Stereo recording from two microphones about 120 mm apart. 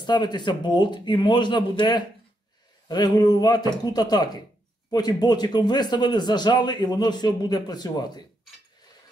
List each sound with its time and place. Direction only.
0.0 s a man's voice: 40° left (ahead or behind)